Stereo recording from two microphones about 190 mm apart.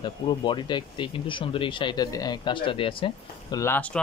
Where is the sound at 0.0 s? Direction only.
25° left (ahead or behind).